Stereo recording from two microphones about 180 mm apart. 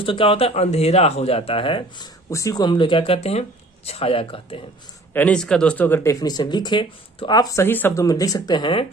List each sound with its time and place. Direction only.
0.0 s speech: 30° left (ahead or behind)
2.3 s speech: 20° left (ahead or behind)
5.1 s speech: 5° left (ahead or behind); by 8.9 s 25° left (ahead or behind)